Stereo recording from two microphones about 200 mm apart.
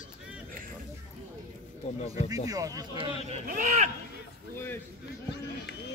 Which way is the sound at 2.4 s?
15° right (ahead or behind).